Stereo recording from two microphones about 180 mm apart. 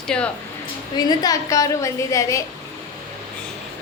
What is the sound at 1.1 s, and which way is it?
A woman's voice, 20° left (ahead or behind).